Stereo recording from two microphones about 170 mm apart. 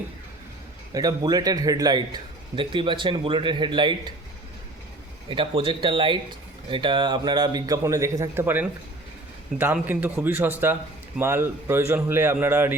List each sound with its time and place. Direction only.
0.9 s a man's voice: 20° right (ahead or behind)
5.3 s a man's voice: 30° right (ahead or behind); by 8.6 s 15° right (ahead or behind)
9.7 s speech: 10° right (ahead or behind)